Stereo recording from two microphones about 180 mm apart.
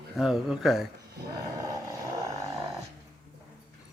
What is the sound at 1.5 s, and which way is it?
Vehicle, 20° right (ahead or behind).